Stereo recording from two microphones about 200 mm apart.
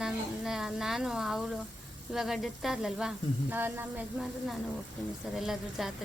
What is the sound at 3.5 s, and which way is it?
Sizzle, 10° right (ahead or behind).